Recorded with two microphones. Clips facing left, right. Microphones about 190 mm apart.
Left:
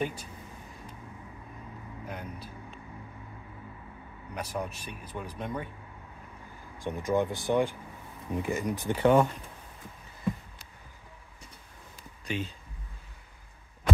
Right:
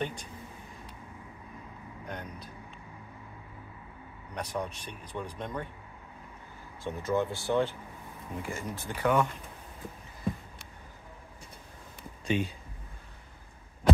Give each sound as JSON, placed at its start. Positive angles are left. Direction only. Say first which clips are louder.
{"t": 0.0, "sound": "speech", "louder": "left 2 dB", "side_deg": 5}
{"t": 2.0, "sound": "vehicle", "louder": "even", "side_deg": 5}
{"t": 4.3, "sound": "speech", "louder": "even", "side_deg": 5}
{"t": 6.8, "sound": "speech", "louder": "left 2 dB", "side_deg": 15}
{"t": 12.0, "sound": "a sound", "louder": "right 5 dB", "side_deg": -20}